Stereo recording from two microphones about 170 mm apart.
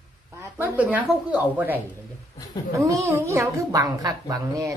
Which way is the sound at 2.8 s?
20° right (ahead or behind).